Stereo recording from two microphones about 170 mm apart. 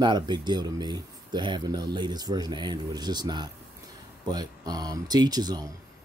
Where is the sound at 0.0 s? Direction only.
25° right (ahead or behind).